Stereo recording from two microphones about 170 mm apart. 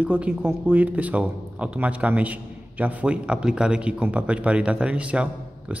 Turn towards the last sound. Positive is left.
turn(degrees=-5)  # may be behind; listen again after turning